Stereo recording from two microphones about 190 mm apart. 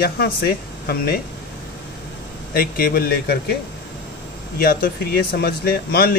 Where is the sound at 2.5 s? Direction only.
50° left (ahead or behind).